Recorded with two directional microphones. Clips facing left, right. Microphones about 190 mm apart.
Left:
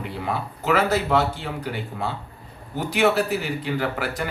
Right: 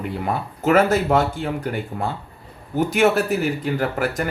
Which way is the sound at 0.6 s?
45° right (ahead or behind).